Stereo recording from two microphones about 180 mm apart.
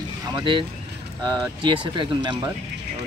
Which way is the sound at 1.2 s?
25° right (ahead or behind).